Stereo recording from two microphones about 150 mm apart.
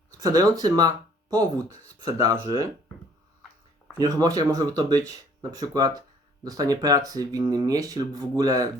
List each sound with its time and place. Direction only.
0.1 s speech: 25° right (ahead or behind)
3.9 s speech: 25° right (ahead or behind)